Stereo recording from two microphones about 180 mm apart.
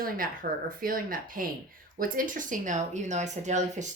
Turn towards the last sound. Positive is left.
turn(degrees=-40)  # may be behind; listen again after turning